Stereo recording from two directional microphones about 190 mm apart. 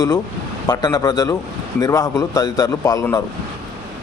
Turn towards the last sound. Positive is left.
turn(degrees=15)  # may be behind; listen again after turning